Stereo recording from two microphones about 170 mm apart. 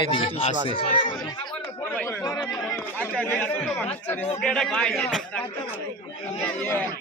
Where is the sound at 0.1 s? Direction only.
30° left (ahead or behind).